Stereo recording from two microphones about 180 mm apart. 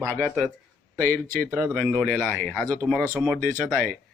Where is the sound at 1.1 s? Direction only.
50° right (ahead or behind).